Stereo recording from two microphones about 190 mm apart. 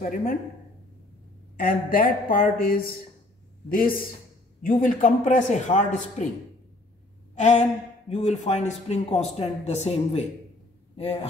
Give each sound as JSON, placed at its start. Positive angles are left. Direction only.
{"t": 0.0, "sound": "a woman's voice", "side_deg": 45}
{"t": 1.6, "sound": "a woman's voice", "side_deg": 50}
{"t": 4.6, "sound": "speech", "side_deg": 45}
{"t": 7.3, "sound": "a sound", "side_deg": 40}
{"t": 8.1, "sound": "speech", "side_deg": 35}